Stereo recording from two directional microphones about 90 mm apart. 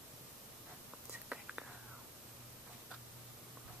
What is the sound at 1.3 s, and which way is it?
Whispering, 15° right (ahead or behind).